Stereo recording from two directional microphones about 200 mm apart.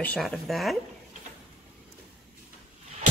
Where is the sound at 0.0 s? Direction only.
5° left (ahead or behind).